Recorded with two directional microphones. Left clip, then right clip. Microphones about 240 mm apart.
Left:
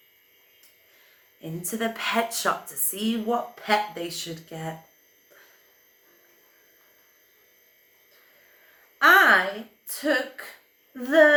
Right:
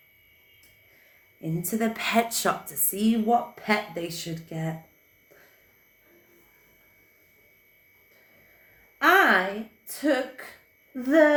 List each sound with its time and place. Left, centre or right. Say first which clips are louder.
1.4 s speech: right 1 dB; centre
9.0 s a sound: left 3 dB; centre
9.8 s speech: left 1 dB; centre